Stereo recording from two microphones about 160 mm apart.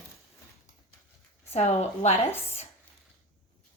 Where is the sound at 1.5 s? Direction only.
45° left (ahead or behind).